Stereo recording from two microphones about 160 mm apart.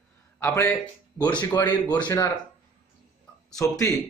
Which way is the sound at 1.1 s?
30° left (ahead or behind).